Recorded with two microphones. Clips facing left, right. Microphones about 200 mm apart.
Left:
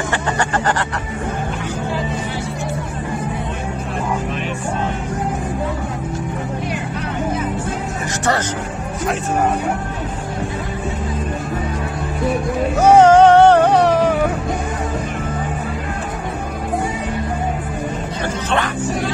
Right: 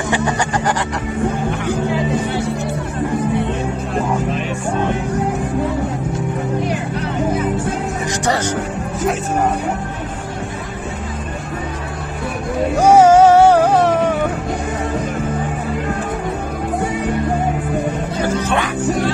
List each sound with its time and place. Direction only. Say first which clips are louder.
0.1 s music: right 4 dB; 15° right (ahead or behind)
12.7 s music: even; 10° right (ahead or behind)